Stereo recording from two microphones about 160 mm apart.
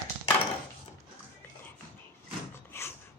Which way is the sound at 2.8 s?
15° left (ahead or behind).